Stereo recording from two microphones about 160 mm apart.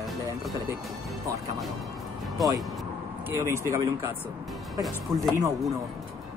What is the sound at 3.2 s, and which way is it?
Speech, 15° right (ahead or behind).